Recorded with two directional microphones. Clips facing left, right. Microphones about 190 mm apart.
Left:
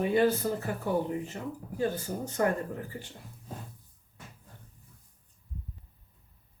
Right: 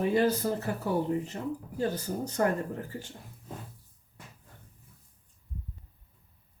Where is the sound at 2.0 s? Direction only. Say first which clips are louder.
Right 2 dB; 40° right (ahead or behind).